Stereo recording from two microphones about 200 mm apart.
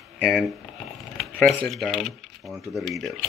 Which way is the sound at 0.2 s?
Centre (ahead or behind).